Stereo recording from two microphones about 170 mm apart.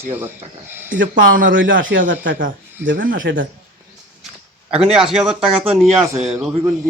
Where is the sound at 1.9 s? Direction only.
75° right (ahead or behind).